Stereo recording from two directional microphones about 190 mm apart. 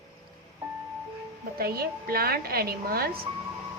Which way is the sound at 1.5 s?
55° right (ahead or behind).